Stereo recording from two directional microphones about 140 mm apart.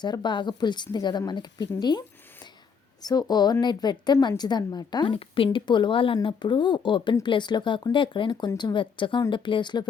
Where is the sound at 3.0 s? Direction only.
30° left (ahead or behind).